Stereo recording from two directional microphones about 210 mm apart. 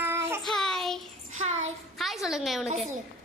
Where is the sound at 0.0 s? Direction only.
10° right (ahead or behind).